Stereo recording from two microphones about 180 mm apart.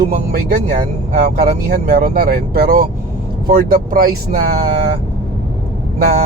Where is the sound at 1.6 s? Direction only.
55° right (ahead or behind).